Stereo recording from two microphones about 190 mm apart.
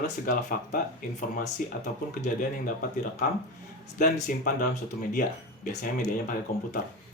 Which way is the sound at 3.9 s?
45° left (ahead or behind).